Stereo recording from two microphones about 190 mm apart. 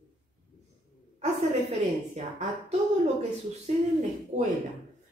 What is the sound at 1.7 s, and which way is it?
Speech, 35° right (ahead or behind).